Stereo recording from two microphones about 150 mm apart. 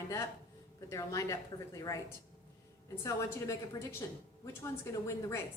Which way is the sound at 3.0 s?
20° left (ahead or behind).